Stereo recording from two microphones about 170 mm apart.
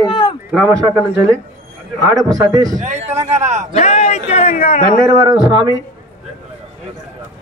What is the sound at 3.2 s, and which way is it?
Speech, 40° right (ahead or behind).